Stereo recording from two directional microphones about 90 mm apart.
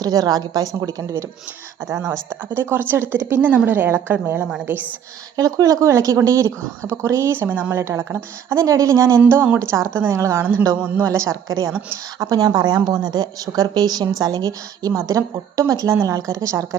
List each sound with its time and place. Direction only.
0.0 s a woman's voice: 45° right (ahead or behind)
2.5 s speech: 25° right (ahead or behind)
5.4 s speech: 40° right (ahead or behind)
10.8 s speech: 20° right (ahead or behind)
11.0 s a woman's voice: 35° right (ahead or behind)